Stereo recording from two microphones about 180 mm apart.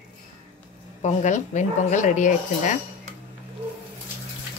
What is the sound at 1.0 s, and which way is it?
Speech, 40° left (ahead or behind).